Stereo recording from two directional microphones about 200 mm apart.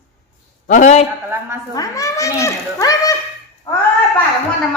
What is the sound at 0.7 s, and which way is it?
Speech, 35° left (ahead or behind).